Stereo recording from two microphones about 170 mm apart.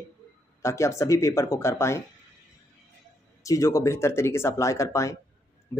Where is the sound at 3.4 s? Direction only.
20° left (ahead or behind).